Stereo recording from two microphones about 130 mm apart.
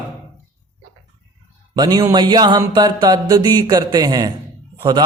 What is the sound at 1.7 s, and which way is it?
A man's voice, 30° right (ahead or behind).